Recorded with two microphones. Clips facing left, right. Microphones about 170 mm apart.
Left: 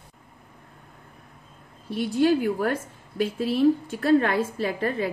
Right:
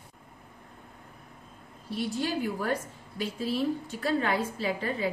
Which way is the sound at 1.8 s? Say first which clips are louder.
Left 9 dB; 60° left (ahead or behind).